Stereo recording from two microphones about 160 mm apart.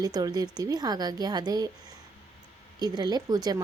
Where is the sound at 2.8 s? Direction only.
25° right (ahead or behind).